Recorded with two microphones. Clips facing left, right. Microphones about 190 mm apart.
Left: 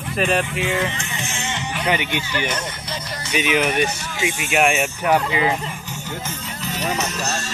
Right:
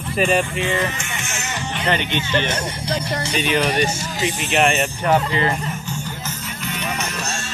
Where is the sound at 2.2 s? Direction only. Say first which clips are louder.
Right 3 dB; 10° left (ahead or behind).